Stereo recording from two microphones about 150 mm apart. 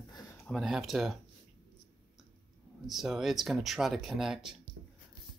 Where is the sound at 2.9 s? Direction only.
Centre (ahead or behind).